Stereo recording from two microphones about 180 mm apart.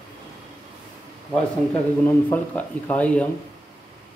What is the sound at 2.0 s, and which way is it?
Speech, 10° left (ahead or behind).